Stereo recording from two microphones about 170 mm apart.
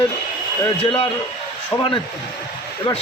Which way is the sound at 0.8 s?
35° left (ahead or behind).